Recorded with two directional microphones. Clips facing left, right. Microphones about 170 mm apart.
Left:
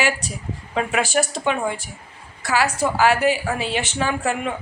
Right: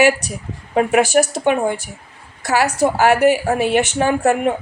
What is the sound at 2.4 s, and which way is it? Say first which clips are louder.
A woman's voice: right 4 dB; 40° right (ahead or behind).